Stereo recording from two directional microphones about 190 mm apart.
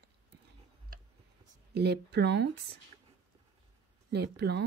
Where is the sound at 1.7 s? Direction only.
60° right (ahead or behind).